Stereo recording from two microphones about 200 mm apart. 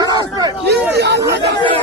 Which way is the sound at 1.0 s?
55° right (ahead or behind).